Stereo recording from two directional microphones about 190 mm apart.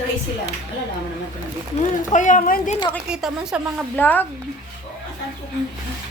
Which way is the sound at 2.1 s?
45° left (ahead or behind).